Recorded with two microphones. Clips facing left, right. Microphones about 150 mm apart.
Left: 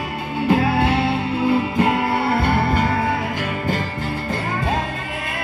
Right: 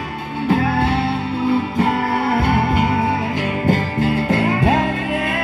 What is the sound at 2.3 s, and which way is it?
Music, 15° right (ahead or behind).